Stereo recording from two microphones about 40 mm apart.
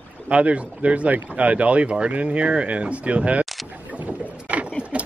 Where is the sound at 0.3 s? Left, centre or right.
Right.